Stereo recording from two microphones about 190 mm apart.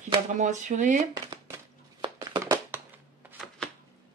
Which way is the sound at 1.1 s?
20° right (ahead or behind).